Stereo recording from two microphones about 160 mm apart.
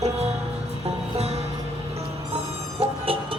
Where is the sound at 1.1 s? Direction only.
40° right (ahead or behind).